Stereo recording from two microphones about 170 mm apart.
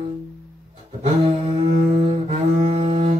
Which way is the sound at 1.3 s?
30° right (ahead or behind).